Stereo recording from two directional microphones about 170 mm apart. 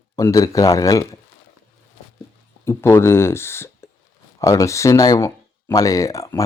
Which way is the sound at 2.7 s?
15° left (ahead or behind).